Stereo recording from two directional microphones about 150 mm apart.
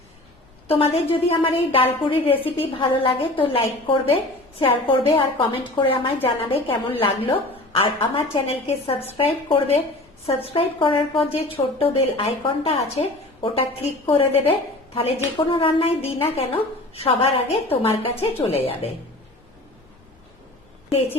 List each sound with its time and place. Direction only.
0.7 s a woman's voice: 40° left (ahead or behind)